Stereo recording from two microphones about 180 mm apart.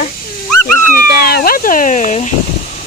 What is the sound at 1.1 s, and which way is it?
Speech, 60° left (ahead or behind).